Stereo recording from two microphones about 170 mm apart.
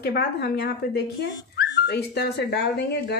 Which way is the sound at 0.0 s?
70° left (ahead or behind).